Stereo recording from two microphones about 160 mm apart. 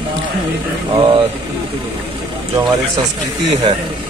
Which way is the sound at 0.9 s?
30° right (ahead or behind).